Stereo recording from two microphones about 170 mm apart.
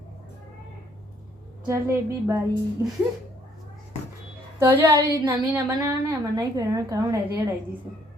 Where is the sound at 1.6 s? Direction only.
15° right (ahead or behind).